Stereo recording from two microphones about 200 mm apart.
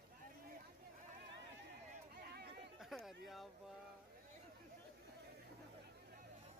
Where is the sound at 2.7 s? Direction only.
Centre (ahead or behind).